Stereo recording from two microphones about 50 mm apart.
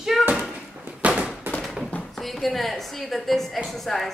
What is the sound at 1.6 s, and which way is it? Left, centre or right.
Fireworks, centre.